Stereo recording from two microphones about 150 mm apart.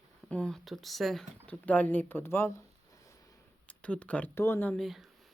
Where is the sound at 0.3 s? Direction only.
5° left (ahead or behind).